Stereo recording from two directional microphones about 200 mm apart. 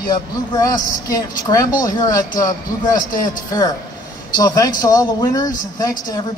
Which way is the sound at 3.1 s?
40° left (ahead or behind).